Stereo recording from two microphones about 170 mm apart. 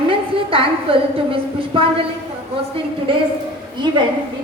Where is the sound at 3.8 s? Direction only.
25° right (ahead or behind).